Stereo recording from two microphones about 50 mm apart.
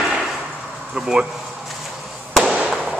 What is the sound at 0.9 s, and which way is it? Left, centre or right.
Speech, centre.